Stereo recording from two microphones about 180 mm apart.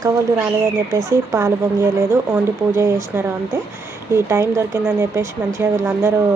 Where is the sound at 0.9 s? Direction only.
15° right (ahead or behind).